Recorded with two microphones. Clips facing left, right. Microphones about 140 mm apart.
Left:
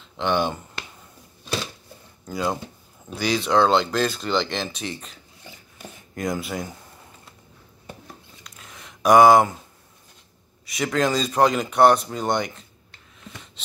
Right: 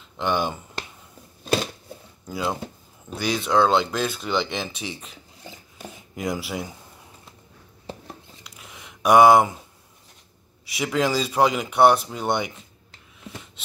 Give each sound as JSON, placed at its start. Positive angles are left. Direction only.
{"t": 0.2, "sound": "speech", "side_deg": -5}
{"t": 1.4, "sound": "a sound", "side_deg": -50}
{"t": 2.2, "sound": "speech", "side_deg": -5}
{"t": 6.1, "sound": "speech", "side_deg": -10}
{"t": 8.5, "sound": "a sound", "side_deg": -10}
{"t": 10.8, "sound": "speech", "side_deg": -10}